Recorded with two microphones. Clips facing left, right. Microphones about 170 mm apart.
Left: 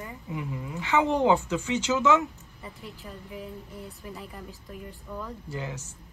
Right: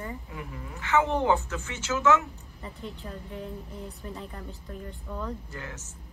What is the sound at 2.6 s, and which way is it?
Speech, 5° left (ahead or behind).